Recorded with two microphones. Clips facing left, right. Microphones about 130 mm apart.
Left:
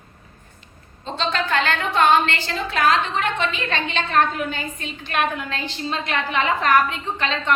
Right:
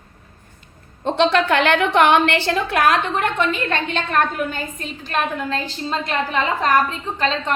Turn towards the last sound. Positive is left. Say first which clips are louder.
# right 1 dB
turn(degrees=-35)  # may be behind; listen again after turning